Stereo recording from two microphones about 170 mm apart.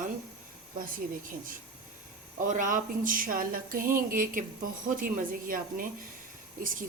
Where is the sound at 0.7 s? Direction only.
55° right (ahead or behind).